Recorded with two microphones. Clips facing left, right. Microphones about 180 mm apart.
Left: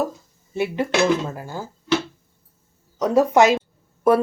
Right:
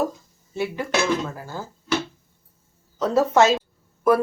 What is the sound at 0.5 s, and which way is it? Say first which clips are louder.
A woman's voice: left 3 dB; 20° left (ahead or behind).